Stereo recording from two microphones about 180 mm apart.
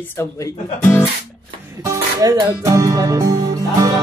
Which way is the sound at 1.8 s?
15° right (ahead or behind).